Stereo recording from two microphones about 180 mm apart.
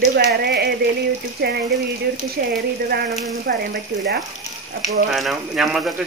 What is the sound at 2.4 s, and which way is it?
Speech, 55° right (ahead or behind).